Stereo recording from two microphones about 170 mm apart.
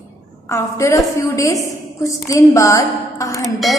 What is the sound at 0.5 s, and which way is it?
A woman's voice, 15° left (ahead or behind).